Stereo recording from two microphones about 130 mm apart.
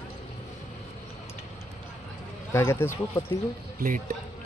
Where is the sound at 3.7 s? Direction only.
90° right.